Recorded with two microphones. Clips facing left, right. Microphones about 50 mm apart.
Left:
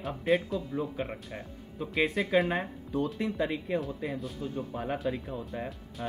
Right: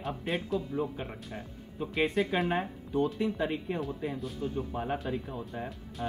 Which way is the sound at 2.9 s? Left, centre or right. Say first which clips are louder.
Right 2 dB; left.